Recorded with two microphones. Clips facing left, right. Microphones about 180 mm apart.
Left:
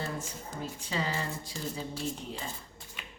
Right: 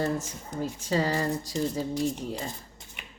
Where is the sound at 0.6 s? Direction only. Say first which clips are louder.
Right 8 dB; 40° right (ahead or behind).